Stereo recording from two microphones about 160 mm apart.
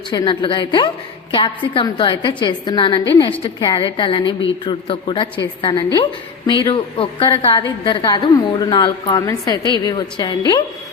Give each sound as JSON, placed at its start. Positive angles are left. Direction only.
{"t": 0.1, "sound": "a woman's voice", "side_deg": 30}